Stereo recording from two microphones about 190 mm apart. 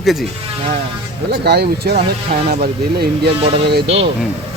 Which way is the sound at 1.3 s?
55° right (ahead or behind).